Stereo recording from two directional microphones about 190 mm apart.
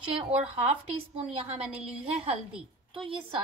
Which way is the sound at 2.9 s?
25° right (ahead or behind).